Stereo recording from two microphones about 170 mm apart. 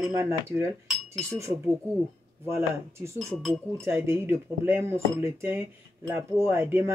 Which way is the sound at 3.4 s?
5° left (ahead or behind).